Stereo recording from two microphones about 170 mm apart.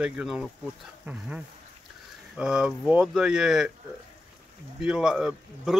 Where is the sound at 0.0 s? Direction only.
5° right (ahead or behind).